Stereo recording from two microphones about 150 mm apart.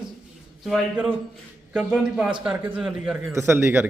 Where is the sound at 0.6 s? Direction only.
5° right (ahead or behind).